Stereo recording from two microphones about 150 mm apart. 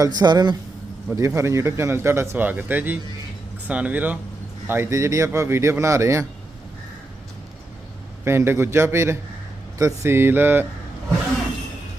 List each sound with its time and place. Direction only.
0.0 s a man's voice: 25° right (ahead or behind)
8.2 s speech: 15° right (ahead or behind)